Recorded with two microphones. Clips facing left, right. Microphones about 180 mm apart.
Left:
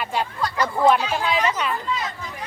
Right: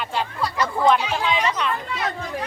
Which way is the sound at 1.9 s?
65° right (ahead or behind).